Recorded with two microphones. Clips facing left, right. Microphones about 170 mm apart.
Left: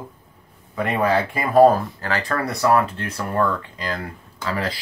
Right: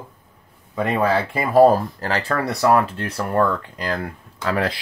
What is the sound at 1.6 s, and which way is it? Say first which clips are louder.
Speech: even; 30° right (ahead or behind).